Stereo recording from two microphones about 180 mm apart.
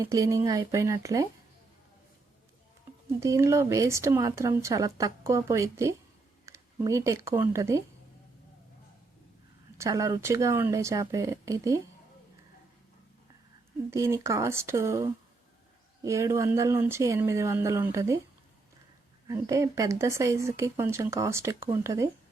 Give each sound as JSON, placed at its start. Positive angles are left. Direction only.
{"t": 0.0, "sound": "speech", "side_deg": -20}
{"t": 3.2, "sound": "speech", "side_deg": -15}
{"t": 9.7, "sound": "speech", "side_deg": -15}
{"t": 13.9, "sound": "speech", "side_deg": -15}
{"t": 19.3, "sound": "speech", "side_deg": -15}